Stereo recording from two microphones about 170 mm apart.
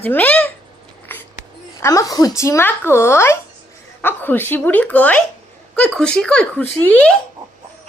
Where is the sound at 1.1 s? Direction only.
10° left (ahead or behind).